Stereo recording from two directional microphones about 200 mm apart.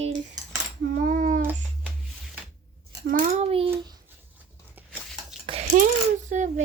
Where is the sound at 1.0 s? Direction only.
40° right (ahead or behind).